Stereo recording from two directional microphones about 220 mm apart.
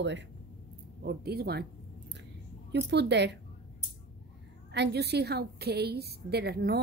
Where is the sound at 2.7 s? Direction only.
50° right (ahead or behind).